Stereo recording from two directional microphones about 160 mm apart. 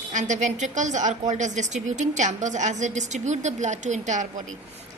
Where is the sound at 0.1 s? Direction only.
50° right (ahead or behind).